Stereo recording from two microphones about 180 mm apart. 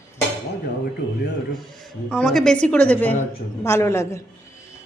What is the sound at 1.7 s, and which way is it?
A woman's voice, 5° left (ahead or behind).